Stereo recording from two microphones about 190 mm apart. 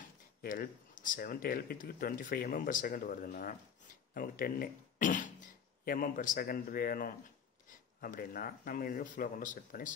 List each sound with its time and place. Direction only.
0.4 s speech: 45° left (ahead or behind)